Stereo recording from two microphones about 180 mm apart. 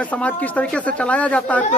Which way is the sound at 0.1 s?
10° left (ahead or behind).